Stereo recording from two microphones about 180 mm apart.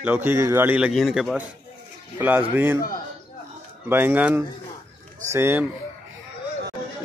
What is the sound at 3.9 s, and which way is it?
Speech, 10° right (ahead or behind).